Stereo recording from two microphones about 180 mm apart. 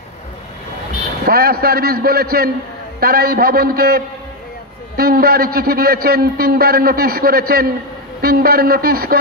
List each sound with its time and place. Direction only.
1.2 s a man's voice: 55° right (ahead or behind)